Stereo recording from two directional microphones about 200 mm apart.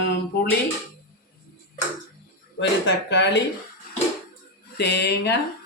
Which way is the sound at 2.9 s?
60° left (ahead or behind).